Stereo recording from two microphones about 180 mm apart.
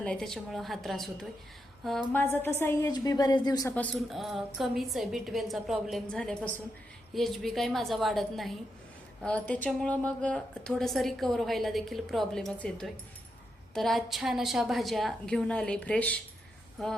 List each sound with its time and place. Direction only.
0.0 s a woman's voice: 5° left (ahead or behind); by 3.8 s 20° left (ahead or behind)
3.8 s a woman's voice: centre (ahead or behind)